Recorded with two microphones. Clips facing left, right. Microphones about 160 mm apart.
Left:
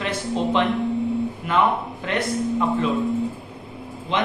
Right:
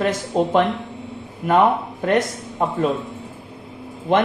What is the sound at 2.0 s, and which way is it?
Speech, 45° right (ahead or behind).